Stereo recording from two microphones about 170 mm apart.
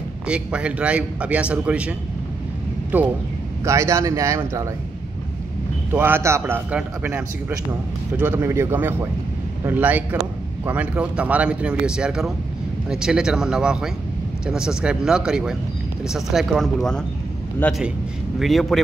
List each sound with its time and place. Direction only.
0.3 s a man's voice: 5° right (ahead or behind)
5.9 s a man's voice: 10° right (ahead or behind)